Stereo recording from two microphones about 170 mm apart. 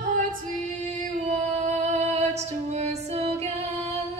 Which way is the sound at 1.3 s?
40° right (ahead or behind).